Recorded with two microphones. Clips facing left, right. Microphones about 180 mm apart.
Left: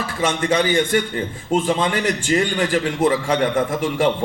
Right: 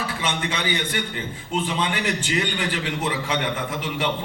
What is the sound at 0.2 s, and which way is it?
A man's voice, 45° left (ahead or behind).